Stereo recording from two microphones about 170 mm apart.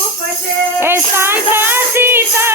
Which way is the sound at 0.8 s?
15° right (ahead or behind).